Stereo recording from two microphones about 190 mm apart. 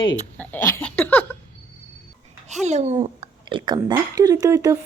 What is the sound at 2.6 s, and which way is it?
Speech, 35° right (ahead or behind).